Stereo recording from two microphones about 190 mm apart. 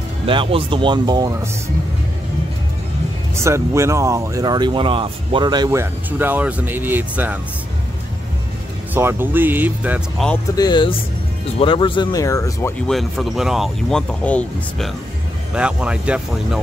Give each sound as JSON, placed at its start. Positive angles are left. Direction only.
{"t": 0.3, "sound": "speech", "side_deg": -30}
{"t": 3.4, "sound": "speech", "side_deg": -15}
{"t": 8.9, "sound": "speech", "side_deg": -10}
{"t": 10.5, "sound": "speech", "side_deg": 20}
{"t": 12.8, "sound": "speech", "side_deg": 0}
{"t": 15.5, "sound": "speech", "side_deg": -5}